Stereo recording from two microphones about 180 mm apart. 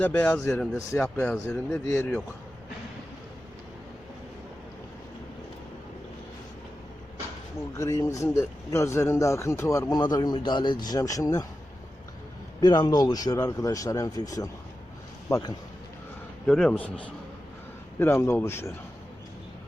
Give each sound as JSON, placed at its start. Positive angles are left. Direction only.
{"t": 0.0, "sound": "speech", "side_deg": 10}
{"t": 1.0, "sound": "speech", "side_deg": 15}
{"t": 7.7, "sound": "speech", "side_deg": 15}
{"t": 12.5, "sound": "speech", "side_deg": 20}
{"t": 16.5, "sound": "speech", "side_deg": 5}
{"t": 18.0, "sound": "speech", "side_deg": 15}